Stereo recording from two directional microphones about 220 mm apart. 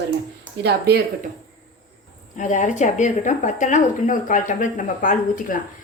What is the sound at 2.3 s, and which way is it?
Speech, 35° left (ahead or behind).